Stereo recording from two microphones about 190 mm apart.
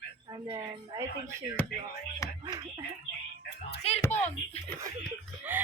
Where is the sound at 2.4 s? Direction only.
20° right (ahead or behind).